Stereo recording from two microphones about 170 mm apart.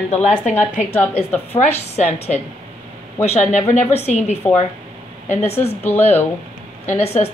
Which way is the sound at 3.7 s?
45° left (ahead or behind).